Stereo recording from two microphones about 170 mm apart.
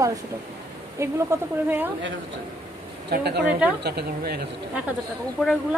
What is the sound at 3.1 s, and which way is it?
Speech, 75° right (ahead or behind).